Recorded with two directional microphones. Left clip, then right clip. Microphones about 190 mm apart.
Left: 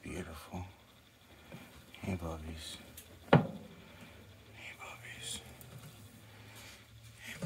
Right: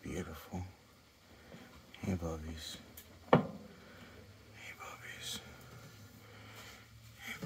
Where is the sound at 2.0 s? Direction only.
30° right (ahead or behind).